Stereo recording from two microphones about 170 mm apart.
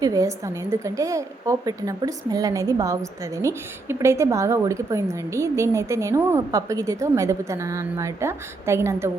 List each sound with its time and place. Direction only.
0.0 s a woman's voice: 20° right (ahead or behind)